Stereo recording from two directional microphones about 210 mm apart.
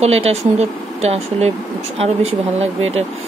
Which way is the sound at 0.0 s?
30° right (ahead or behind).